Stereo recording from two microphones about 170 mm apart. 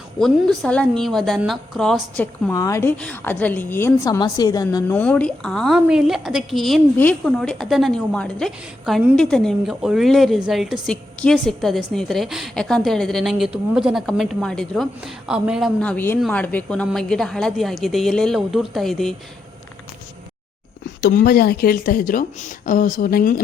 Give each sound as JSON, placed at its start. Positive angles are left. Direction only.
{"t": 0.2, "sound": "a woman's voice", "side_deg": 0}
{"t": 4.9, "sound": "a woman's voice", "side_deg": 10}
{"t": 15.8, "sound": "a woman's voice", "side_deg": 10}
{"t": 21.0, "sound": "a woman's voice", "side_deg": 60}